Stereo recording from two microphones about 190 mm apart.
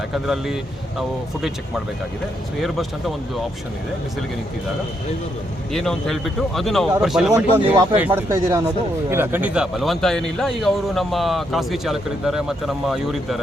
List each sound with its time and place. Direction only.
0.1 s speech: centre (ahead or behind)
2.6 s speech: centre (ahead or behind)
5.7 s speech: centre (ahead or behind)
7.3 s speech: 10° right (ahead or behind)